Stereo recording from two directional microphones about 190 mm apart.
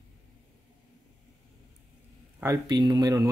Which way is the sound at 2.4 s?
20° right (ahead or behind).